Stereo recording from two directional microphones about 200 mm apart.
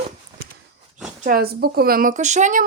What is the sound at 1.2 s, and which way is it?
A woman's voice, 45° right (ahead or behind).